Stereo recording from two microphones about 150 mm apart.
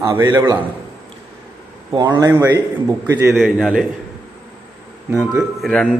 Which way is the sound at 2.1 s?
20° right (ahead or behind).